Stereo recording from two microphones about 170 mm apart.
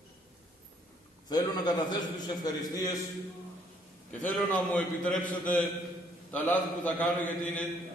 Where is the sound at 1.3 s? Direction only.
25° left (ahead or behind).